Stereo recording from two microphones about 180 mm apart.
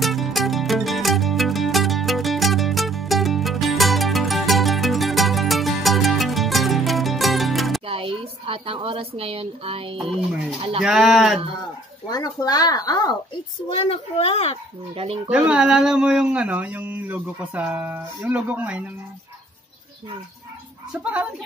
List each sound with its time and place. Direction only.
0.0 s music: centre (ahead or behind)
7.8 s speech: 30° right (ahead or behind)
10.8 s speech: 5° right (ahead or behind)
12.1 s speech: 20° left (ahead or behind)
13.7 s a child's voice: 30° left (ahead or behind)
15.2 s speech: 5° right (ahead or behind)
21.0 s speech: 10° right (ahead or behind)